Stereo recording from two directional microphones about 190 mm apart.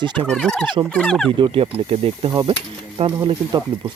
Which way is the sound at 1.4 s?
25° right (ahead or behind).